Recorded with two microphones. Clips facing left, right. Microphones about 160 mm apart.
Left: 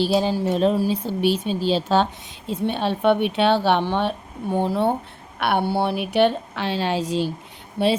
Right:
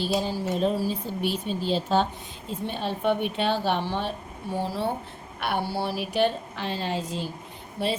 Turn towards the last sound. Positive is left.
turn(degrees=65)  # may be behind; listen again after turning